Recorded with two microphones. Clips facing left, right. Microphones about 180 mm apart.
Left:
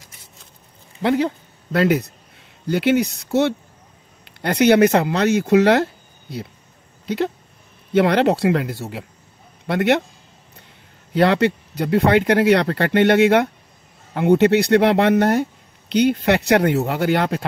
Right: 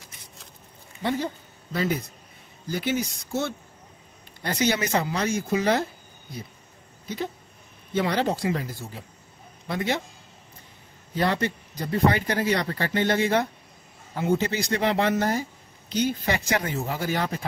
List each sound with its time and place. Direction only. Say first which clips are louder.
1.0 s speech: left 8 dB; 75° left (ahead or behind)
7.9 s speech: left 9 dB; 65° left (ahead or behind)
11.1 s speech: left 9 dB; 70° left (ahead or behind)